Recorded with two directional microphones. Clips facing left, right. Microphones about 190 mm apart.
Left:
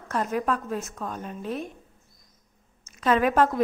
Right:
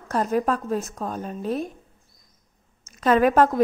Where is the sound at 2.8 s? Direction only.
40° right (ahead or behind).